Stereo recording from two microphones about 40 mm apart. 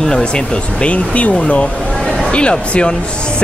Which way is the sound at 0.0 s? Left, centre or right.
Centre.